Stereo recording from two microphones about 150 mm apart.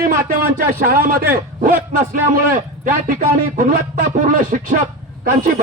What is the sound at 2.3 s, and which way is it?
A man's voice, 70° right (ahead or behind).